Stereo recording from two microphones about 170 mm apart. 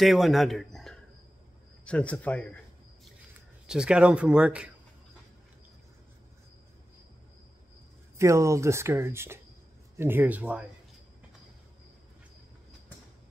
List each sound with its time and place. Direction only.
0.0 s speech: centre (ahead or behind)
3.6 s speech: 5° right (ahead or behind)
8.2 s speech: 15° right (ahead or behind)